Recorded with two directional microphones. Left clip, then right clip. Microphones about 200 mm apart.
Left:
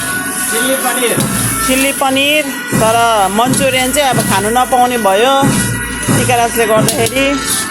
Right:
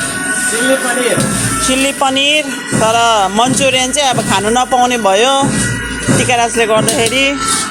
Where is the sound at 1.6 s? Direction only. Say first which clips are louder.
Even; 5° right (ahead or behind).